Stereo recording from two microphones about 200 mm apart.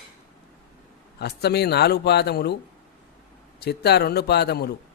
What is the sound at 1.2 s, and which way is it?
Speech, 55° left (ahead or behind).